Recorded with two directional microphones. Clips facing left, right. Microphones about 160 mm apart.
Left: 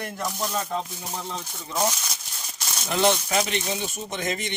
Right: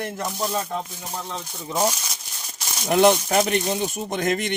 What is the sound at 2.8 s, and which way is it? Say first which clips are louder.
Speech: right 6 dB; 50° right (ahead or behind).